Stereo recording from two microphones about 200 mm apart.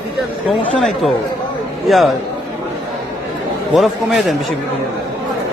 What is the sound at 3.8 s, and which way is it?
Speech, centre (ahead or behind).